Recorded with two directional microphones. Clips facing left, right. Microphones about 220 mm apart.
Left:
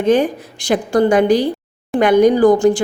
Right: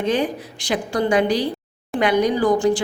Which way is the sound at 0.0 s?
50° left (ahead or behind).